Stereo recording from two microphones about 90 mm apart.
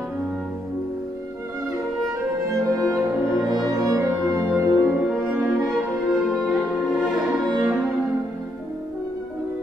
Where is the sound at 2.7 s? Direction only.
40° right (ahead or behind).